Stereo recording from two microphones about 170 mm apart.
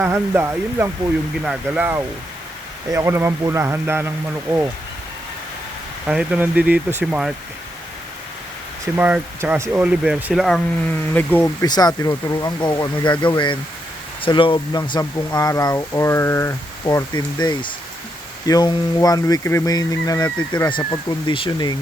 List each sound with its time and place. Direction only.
0.0 s speech: 10° right (ahead or behind)
6.1 s speech: 5° right (ahead or behind)
9.0 s speech: 10° right (ahead or behind)
11.1 s speech: 10° left (ahead or behind)
11.6 s speech: 25° left (ahead or behind)